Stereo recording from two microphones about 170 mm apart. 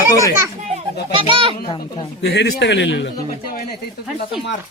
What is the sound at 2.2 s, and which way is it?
Speech, 80° left.